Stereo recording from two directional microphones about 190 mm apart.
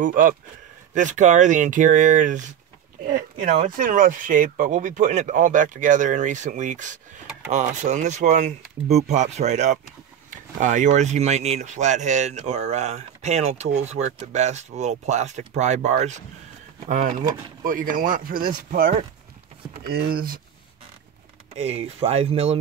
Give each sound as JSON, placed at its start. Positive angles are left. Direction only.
{"t": 0.0, "sound": "speech", "side_deg": -45}
{"t": 21.5, "sound": "speech", "side_deg": -35}